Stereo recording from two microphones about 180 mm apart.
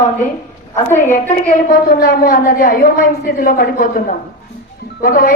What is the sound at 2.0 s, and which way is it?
A woman's voice, 55° left (ahead or behind).